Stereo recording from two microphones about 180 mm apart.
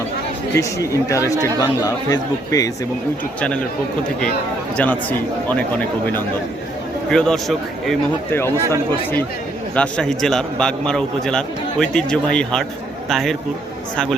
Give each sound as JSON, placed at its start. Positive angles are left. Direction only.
{"t": 0.5, "sound": "a man's voice", "side_deg": 20}
{"t": 4.8, "sound": "a man's voice", "side_deg": 10}
{"t": 7.1, "sound": "a man's voice", "side_deg": 5}
{"t": 9.7, "sound": "a man's voice", "side_deg": 5}